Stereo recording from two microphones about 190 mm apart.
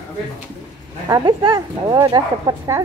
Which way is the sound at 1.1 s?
20° right (ahead or behind).